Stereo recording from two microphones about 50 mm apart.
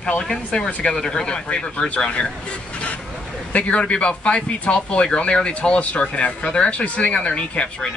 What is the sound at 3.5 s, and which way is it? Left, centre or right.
Speech, left.